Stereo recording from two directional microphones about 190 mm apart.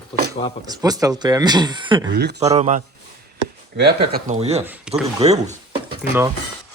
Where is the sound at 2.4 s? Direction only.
35° right (ahead or behind).